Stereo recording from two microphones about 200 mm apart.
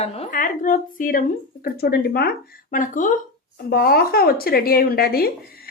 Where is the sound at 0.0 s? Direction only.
30° left (ahead or behind).